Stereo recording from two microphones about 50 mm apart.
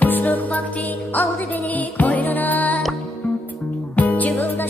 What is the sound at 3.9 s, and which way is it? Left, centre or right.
Music, left.